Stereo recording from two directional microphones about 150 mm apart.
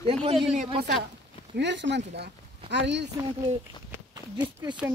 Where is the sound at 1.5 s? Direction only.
90° right.